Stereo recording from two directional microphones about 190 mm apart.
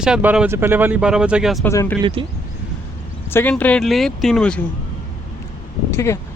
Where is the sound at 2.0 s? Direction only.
25° right (ahead or behind).